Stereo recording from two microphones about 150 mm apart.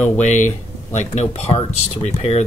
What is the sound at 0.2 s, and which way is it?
Speech, 55° left (ahead or behind).